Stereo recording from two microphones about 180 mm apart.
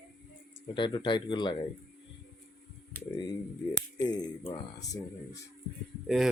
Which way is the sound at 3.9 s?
20° left (ahead or behind).